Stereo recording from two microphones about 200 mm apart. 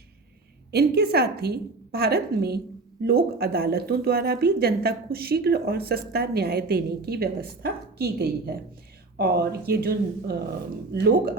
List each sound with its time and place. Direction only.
0.7 s a woman's voice: 50° right (ahead or behind)